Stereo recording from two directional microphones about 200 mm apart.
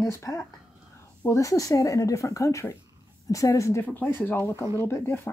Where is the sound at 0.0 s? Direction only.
15° left (ahead or behind).